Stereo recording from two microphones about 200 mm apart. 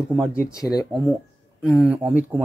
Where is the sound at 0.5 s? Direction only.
20° left (ahead or behind).